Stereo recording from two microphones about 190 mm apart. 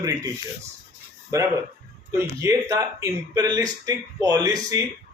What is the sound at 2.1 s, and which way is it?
Speech, 15° right (ahead or behind).